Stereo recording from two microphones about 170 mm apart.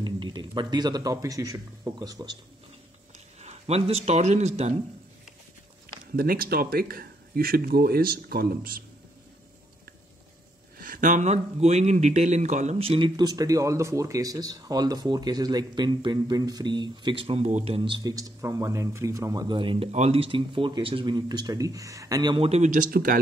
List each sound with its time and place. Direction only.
0.0 s a man's voice: 30° right (ahead or behind)
3.3 s speech: 40° right (ahead or behind)
6.1 s speech: 60° right (ahead or behind)
10.8 s speech: 50° right (ahead or behind); by 22.5 s 25° right (ahead or behind)
22.5 s speech: 45° right (ahead or behind)